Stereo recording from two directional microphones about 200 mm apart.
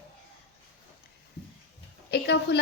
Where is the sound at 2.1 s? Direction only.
55° left (ahead or behind).